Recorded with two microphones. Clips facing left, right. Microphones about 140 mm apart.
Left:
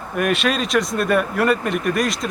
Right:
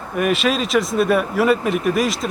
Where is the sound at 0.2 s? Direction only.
Centre (ahead or behind).